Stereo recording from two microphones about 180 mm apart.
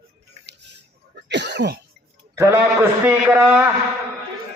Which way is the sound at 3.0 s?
15° right (ahead or behind).